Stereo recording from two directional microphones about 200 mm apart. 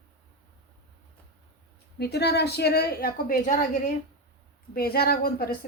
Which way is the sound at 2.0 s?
55° left (ahead or behind).